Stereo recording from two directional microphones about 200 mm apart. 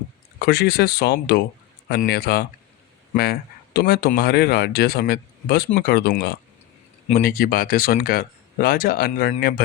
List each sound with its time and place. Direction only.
0.4 s speech: 55° left (ahead or behind)